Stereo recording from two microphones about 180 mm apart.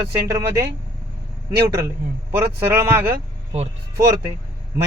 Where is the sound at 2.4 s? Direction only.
10° right (ahead or behind).